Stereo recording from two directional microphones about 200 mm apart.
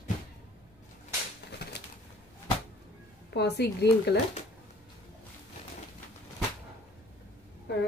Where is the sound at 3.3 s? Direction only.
55° left (ahead or behind).